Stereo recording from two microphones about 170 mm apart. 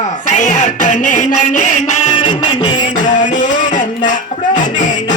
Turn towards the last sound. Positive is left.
turn(degrees=45)  # may be behind; listen again after turning